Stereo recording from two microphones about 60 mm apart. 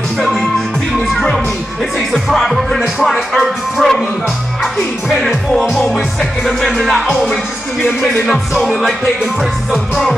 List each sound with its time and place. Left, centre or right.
0.2 s music: centre
2.0 s speech: centre
5.1 s speech: centre